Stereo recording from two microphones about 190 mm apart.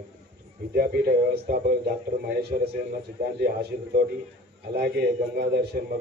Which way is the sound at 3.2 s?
55° right (ahead or behind).